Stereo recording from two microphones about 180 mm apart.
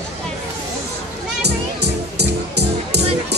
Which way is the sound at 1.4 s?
70° right (ahead or behind).